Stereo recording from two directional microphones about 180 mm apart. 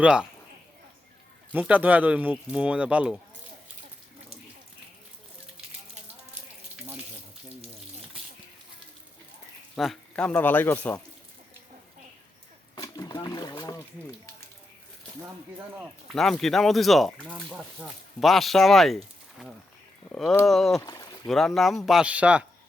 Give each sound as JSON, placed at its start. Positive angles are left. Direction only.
{"t": 0.0, "sound": "speech", "side_deg": -5}
{"t": 1.5, "sound": "speech", "side_deg": -10}
{"t": 9.7, "sound": "speech", "side_deg": 0}
{"t": 12.7, "sound": "a sound", "side_deg": 20}
{"t": 15.2, "sound": "speech", "side_deg": -10}
{"t": 16.1, "sound": "speech", "side_deg": 0}
{"t": 20.8, "sound": "speech", "side_deg": 20}
{"t": 21.2, "sound": "speech", "side_deg": 0}